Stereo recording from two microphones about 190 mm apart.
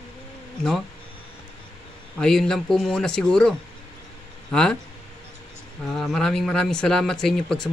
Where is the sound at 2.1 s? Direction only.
5° left (ahead or behind).